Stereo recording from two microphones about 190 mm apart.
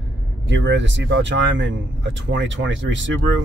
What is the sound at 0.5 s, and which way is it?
Speech, 70° right (ahead or behind).